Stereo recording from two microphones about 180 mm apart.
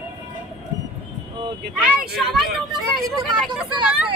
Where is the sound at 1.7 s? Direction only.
Centre (ahead or behind).